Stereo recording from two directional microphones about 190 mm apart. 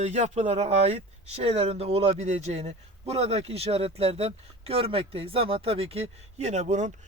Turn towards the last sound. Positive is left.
turn(degrees=-35)  # may be behind; listen again after turning